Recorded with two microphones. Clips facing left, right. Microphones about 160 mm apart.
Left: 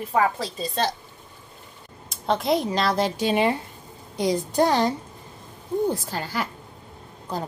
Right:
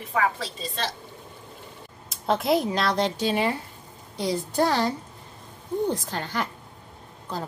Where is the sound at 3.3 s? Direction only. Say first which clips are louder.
Left 3 dB; 20° left (ahead or behind).